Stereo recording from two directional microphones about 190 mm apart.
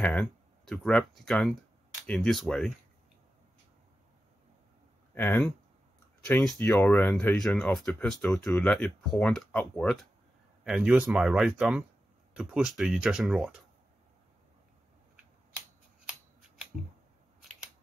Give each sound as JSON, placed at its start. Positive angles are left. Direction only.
{"t": 0.0, "sound": "speech", "side_deg": 5}
{"t": 5.1, "sound": "speech", "side_deg": 10}